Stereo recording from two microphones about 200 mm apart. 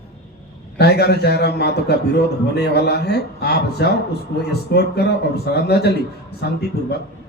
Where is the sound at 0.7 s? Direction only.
55° left (ahead or behind).